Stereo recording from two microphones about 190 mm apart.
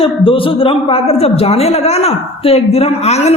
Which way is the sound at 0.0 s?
30° left (ahead or behind).